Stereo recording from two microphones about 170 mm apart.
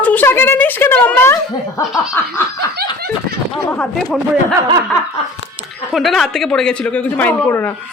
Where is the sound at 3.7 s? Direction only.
5° left (ahead or behind).